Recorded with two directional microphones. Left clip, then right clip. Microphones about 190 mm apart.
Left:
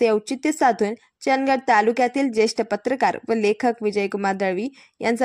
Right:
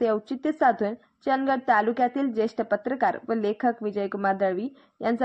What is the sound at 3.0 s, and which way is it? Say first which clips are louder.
Speech: left 5 dB; 50° left (ahead or behind).